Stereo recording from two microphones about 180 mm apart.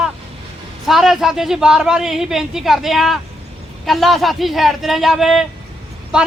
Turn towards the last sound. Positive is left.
turn(degrees=-5)  # may be behind; listen again after turning